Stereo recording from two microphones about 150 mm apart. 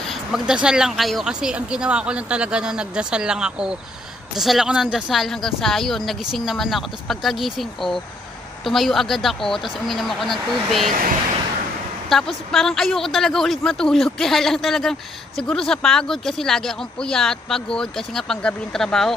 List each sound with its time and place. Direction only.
0.1 s speech: 5° right (ahead or behind)
10.9 s speech: 65° right (ahead or behind)
12.1 s speech: centre (ahead or behind)